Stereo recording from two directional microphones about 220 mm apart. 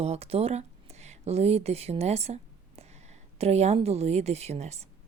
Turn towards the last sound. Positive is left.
turn(degrees=-30)  # may be behind; listen again after turning